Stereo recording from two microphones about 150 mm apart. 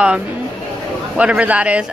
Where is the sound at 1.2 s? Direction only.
10° right (ahead or behind).